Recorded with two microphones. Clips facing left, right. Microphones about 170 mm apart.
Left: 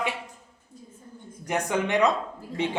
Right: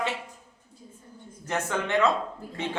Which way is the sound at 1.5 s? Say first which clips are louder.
Left 2 dB; 15° left (ahead or behind).